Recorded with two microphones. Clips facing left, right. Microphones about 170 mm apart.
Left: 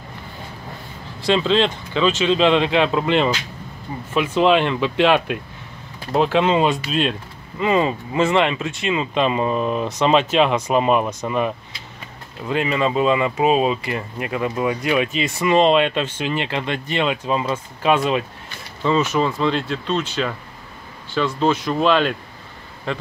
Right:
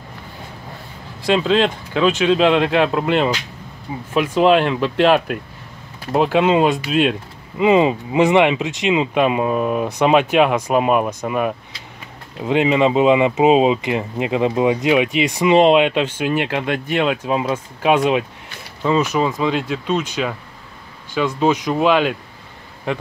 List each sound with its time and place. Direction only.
1.2 s speech: 10° right (ahead or behind)
12.4 s speech: 20° right (ahead or behind)